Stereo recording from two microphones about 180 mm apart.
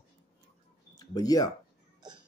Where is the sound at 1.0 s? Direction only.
20° left (ahead or behind).